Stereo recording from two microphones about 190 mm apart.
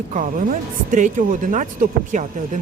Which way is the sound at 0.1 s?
45° right (ahead or behind).